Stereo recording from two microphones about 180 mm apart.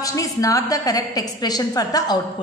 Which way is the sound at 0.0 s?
20° left (ahead or behind).